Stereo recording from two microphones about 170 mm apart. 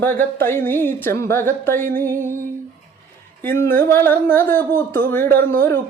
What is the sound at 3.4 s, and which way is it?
Speech, 15° left (ahead or behind).